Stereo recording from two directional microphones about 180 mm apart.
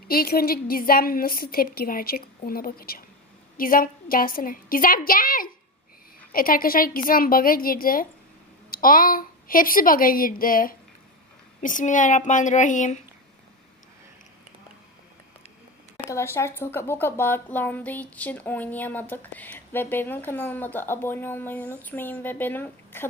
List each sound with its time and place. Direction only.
0.1 s a woman's voice: 55° left (ahead or behind)
16.0 s speech: 15° left (ahead or behind)